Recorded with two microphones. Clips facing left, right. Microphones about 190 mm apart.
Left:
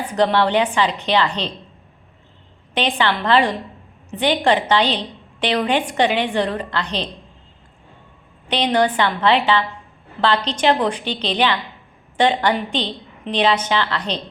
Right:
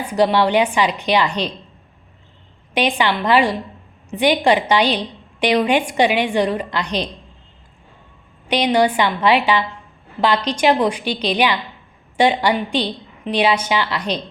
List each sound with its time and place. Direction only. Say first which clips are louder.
0.1 s a woman's voice: right 2 dB; 10° right (ahead or behind)
2.7 s a woman's voice: right 2 dB; 10° right (ahead or behind)
8.4 s a woman's voice: right 2 dB; 10° right (ahead or behind)